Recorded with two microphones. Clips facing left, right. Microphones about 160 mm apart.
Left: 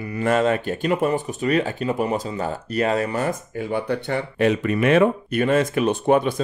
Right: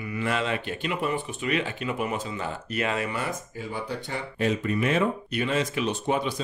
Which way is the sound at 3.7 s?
60° left (ahead or behind).